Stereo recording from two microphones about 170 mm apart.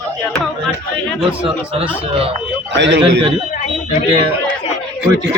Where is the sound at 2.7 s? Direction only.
90° right.